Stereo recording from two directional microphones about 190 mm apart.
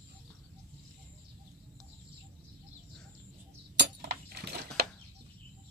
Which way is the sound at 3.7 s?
60° right (ahead or behind).